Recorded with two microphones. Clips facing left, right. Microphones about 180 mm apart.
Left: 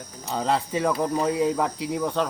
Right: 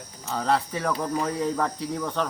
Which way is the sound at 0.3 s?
20° left (ahead or behind).